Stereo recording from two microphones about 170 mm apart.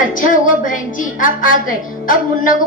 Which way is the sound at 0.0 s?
50° left (ahead or behind).